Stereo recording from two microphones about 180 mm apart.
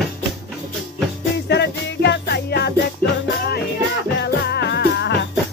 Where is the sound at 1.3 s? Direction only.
70° left (ahead or behind).